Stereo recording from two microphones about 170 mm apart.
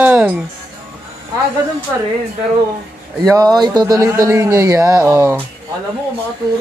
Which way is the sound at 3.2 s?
20° right (ahead or behind).